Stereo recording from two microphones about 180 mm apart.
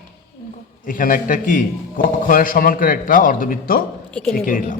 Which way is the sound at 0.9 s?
50° left (ahead or behind).